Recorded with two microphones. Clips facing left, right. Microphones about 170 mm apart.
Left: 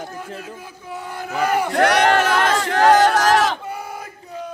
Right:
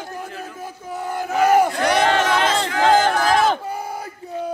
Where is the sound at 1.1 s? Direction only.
45° right (ahead or behind).